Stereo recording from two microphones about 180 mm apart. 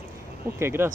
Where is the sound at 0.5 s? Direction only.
15° right (ahead or behind).